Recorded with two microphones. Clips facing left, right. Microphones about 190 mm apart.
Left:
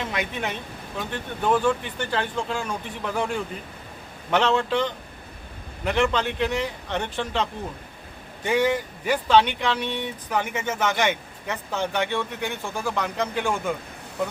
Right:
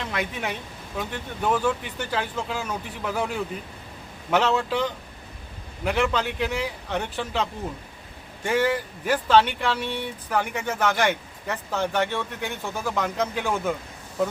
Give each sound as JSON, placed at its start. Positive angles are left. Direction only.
{"t": 0.0, "sound": "speech", "side_deg": 0}
{"t": 9.0, "sound": "a man's voice", "side_deg": -5}
{"t": 11.5, "sound": "speech", "side_deg": 15}
{"t": 12.4, "sound": "a man's voice", "side_deg": 0}